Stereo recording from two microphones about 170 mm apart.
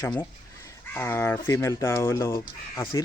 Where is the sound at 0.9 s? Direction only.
10° left (ahead or behind).